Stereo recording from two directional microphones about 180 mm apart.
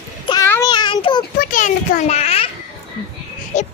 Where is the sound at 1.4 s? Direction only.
50° left (ahead or behind).